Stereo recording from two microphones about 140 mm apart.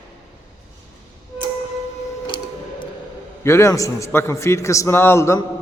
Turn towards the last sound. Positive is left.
turn(degrees=20)  # may be behind; listen again after turning